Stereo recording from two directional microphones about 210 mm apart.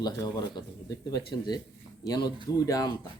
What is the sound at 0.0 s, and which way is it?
Speech, 20° left (ahead or behind).